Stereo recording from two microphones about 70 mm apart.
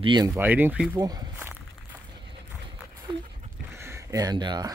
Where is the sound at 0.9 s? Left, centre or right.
Right.